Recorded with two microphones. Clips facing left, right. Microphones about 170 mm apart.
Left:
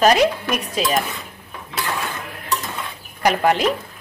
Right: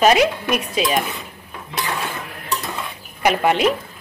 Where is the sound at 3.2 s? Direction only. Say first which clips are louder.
Even; 5° right (ahead or behind).